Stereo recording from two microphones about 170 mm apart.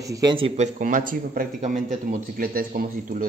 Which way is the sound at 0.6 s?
50° right (ahead or behind).